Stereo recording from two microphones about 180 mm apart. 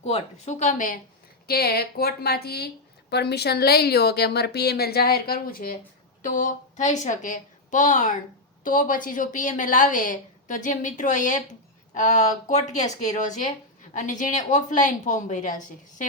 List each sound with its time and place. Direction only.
0.0 s speech: 40° left (ahead or behind)
1.5 s a woman's voice: 60° left (ahead or behind)